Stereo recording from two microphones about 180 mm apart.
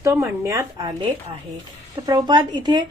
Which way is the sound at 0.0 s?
15° right (ahead or behind).